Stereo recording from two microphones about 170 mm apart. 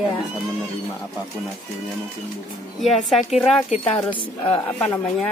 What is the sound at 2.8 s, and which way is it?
Speech, centre (ahead or behind).